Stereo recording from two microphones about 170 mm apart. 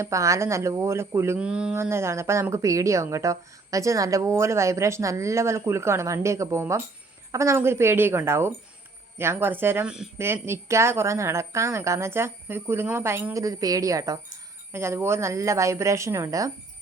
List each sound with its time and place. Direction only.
0.0 s speech: 20° right (ahead or behind)